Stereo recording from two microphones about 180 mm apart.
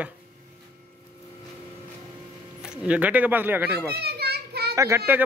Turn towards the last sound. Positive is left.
turn(degrees=-15)  # may be behind; listen again after turning